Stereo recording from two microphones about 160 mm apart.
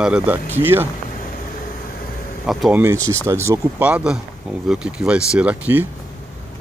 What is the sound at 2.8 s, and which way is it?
Speech, 20° right (ahead or behind).